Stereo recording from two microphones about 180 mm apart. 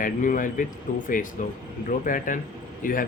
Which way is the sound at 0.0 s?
50° left (ahead or behind).